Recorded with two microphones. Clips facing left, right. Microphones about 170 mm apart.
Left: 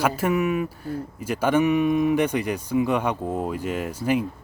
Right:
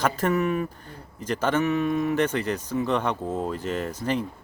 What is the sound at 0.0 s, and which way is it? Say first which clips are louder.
Speech: left 1 dB; 10° left (ahead or behind).